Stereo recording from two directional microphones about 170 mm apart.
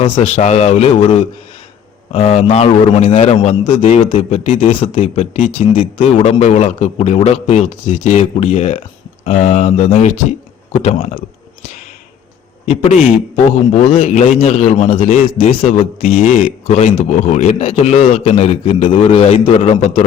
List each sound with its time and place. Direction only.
0.0 s a man's voice: 40° left (ahead or behind)
4.4 s a man's voice: 50° left (ahead or behind)
12.6 s a man's voice: 35° left (ahead or behind)